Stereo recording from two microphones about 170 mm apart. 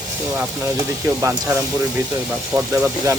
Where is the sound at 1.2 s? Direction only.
20° right (ahead or behind).